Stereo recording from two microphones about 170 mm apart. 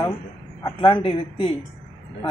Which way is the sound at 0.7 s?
25° left (ahead or behind).